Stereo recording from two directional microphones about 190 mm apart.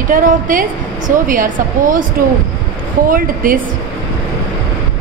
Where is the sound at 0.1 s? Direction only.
45° right (ahead or behind).